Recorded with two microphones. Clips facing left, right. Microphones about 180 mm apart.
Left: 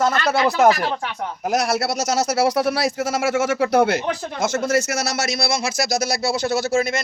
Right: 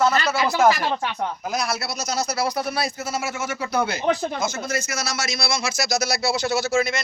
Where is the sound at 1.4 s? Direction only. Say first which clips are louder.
Left 10 dB; 75° left (ahead or behind).